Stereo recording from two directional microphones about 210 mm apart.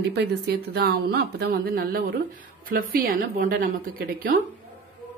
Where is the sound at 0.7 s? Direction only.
50° right (ahead or behind).